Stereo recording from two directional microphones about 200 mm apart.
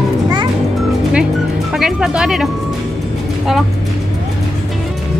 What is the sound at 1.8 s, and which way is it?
Music, 5° right (ahead or behind).